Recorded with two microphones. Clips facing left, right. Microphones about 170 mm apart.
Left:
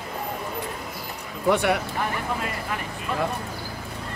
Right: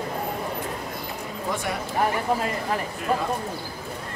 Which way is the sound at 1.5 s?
70° left (ahead or behind).